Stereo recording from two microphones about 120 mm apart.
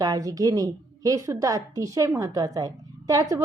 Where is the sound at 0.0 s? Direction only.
30° right (ahead or behind).